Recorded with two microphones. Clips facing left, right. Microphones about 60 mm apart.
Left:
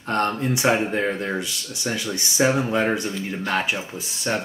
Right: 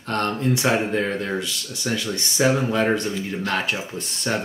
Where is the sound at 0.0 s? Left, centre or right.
Centre.